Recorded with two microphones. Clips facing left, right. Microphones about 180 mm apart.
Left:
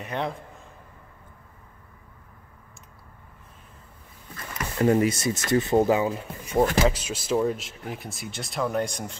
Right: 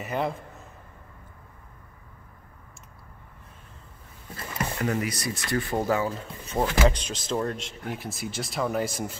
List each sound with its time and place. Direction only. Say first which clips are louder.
0.0 s speech: right 1 dB; 5° right (ahead or behind)
4.7 s speech: left 9 dB; 30° left (ahead or behind); by 9.1 s 5° right (ahead or behind)